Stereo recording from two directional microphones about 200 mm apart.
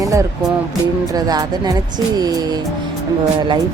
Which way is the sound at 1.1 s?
20° right (ahead or behind).